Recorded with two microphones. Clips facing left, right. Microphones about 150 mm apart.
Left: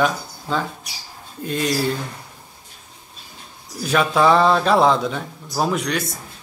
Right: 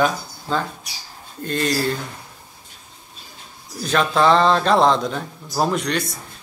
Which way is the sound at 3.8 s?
5° left (ahead or behind).